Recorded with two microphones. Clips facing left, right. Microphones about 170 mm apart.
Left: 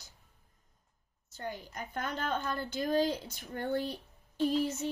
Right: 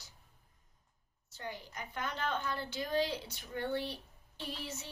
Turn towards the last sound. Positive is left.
turn(degrees=45)  # may be behind; listen again after turning